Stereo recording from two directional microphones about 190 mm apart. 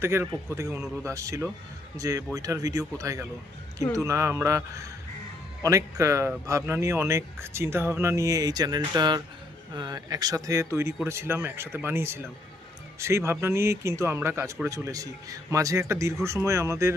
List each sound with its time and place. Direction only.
0.0 s speech: 15° right (ahead or behind)